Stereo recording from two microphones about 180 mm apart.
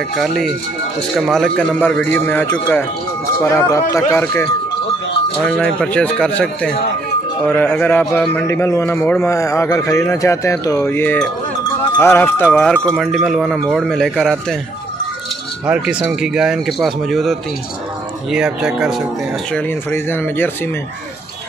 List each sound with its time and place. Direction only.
0.1 s a man's voice: centre (ahead or behind)
3.4 s a man's voice: 15° left (ahead or behind); by 14.6 s centre (ahead or behind)
15.6 s speech: 5° right (ahead or behind)
19.5 s a man's voice: 10° left (ahead or behind)